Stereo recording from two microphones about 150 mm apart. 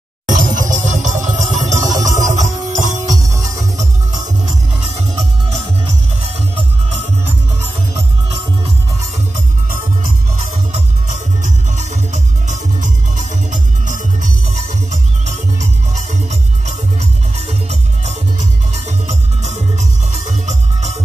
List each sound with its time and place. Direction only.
0.3 s music: 60° right (ahead or behind)
11.1 s music: 55° right (ahead or behind)